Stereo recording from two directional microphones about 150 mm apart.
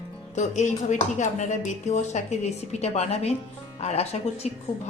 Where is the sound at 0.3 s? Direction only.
55° left (ahead or behind).